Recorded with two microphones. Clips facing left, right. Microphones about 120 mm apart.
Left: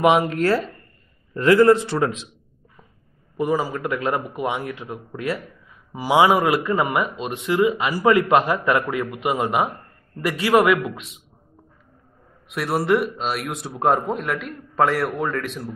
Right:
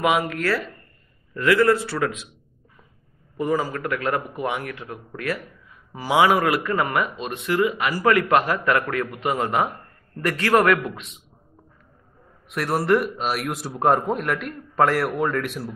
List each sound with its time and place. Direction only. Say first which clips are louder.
0.0 s a man's voice: left 4 dB; 25° left (ahead or behind)
3.3 s a man's voice: left 1 dB; 15° left (ahead or behind)
12.4 s a man's voice: even; centre (ahead or behind)